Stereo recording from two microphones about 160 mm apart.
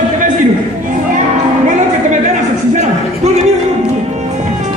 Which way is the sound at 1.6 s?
50° right (ahead or behind).